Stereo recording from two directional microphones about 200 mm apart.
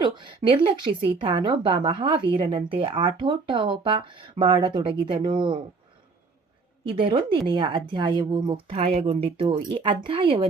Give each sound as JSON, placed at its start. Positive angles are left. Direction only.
{"t": 0.0, "sound": "a woman's voice", "side_deg": -25}
{"t": 7.0, "sound": "a woman's voice", "side_deg": -25}